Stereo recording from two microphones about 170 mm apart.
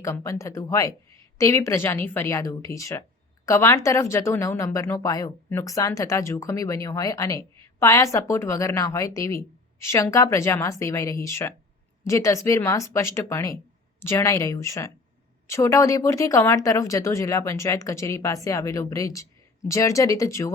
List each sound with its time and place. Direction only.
0.0 s speech: 15° left (ahead or behind)